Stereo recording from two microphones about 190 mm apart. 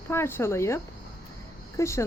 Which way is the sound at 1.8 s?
15° left (ahead or behind).